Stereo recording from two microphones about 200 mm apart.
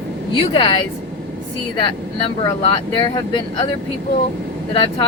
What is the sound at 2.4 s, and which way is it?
Speech, 25° left (ahead or behind).